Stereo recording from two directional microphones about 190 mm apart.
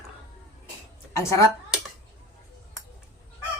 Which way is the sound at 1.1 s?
15° left (ahead or behind).